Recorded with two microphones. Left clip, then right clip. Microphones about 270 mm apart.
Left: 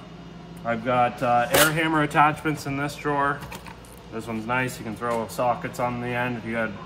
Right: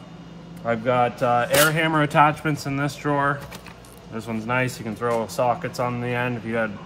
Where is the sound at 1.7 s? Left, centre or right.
Right.